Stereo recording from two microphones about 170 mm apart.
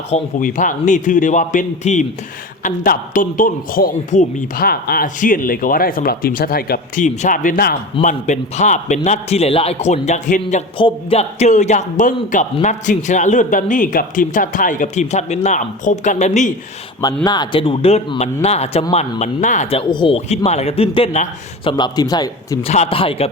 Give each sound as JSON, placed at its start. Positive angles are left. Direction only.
{"t": 0.1, "sound": "a man's voice", "side_deg": 50}
{"t": 8.0, "sound": "a man's voice", "side_deg": 45}
{"t": 10.8, "sound": "a man's voice", "side_deg": 30}
{"t": 17.2, "sound": "a man's voice", "side_deg": 25}
{"t": 19.9, "sound": "a man's voice", "side_deg": 30}
{"t": 22.6, "sound": "a man's voice", "side_deg": 40}